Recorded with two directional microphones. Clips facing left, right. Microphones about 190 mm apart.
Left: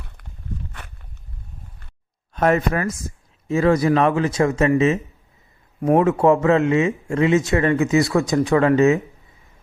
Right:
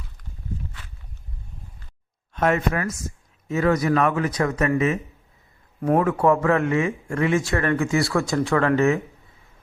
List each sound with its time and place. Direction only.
2.3 s a man's voice: 40° left (ahead or behind)
5.8 s a man's voice: 20° left (ahead or behind)